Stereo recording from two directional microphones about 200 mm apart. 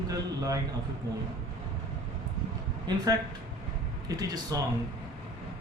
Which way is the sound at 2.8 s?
20° right (ahead or behind).